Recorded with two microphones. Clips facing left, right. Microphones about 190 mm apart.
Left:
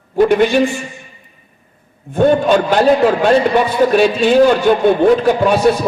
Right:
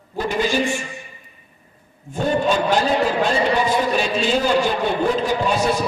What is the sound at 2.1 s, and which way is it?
A man's voice, 65° left (ahead or behind).